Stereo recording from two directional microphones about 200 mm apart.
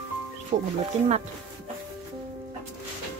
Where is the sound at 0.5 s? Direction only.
35° right (ahead or behind).